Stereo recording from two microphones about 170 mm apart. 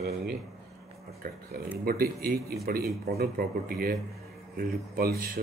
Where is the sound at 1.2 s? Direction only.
60° right (ahead or behind).